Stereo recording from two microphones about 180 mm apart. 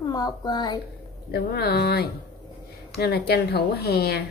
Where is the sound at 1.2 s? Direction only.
65° left (ahead or behind).